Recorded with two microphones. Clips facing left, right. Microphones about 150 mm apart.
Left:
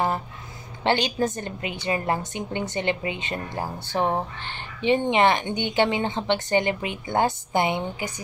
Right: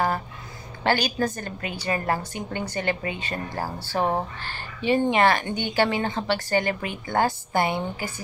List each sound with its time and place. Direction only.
0.8 s speech: 25° left (ahead or behind)